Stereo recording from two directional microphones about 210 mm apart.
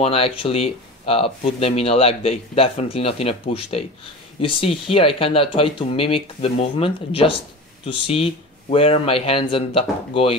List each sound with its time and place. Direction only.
0.0 s speech: 25° left (ahead or behind)